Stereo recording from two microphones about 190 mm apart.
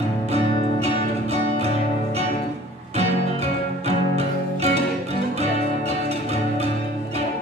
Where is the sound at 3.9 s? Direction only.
35° right (ahead or behind).